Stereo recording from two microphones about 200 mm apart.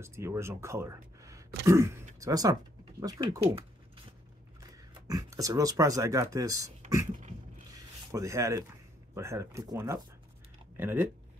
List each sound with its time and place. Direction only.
0.0 s speech: 15° right (ahead or behind)
7.2 s a sound: 40° right (ahead or behind)
8.1 s speech: 15° right (ahead or behind)